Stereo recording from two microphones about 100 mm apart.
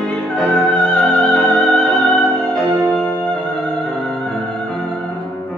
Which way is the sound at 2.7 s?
30° right (ahead or behind).